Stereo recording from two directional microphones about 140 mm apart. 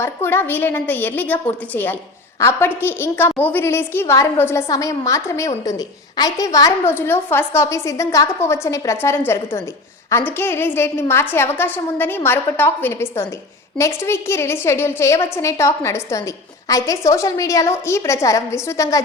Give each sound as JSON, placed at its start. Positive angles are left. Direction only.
{"t": 0.0, "sound": "a woman's voice", "side_deg": 15}